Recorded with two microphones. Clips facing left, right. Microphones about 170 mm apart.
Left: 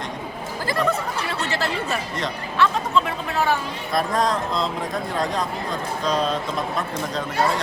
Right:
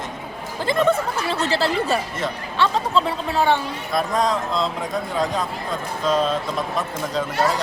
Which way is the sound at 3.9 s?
Centre (ahead or behind).